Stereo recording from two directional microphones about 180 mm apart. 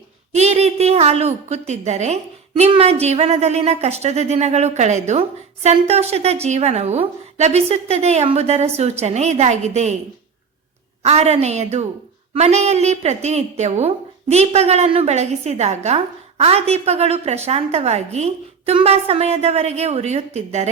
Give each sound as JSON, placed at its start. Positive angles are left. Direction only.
{"t": 0.3, "sound": "a woman's voice", "side_deg": -35}
{"t": 11.0, "sound": "a woman's voice", "side_deg": -35}